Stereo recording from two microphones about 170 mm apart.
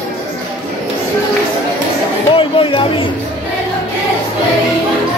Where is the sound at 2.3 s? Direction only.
30° left (ahead or behind).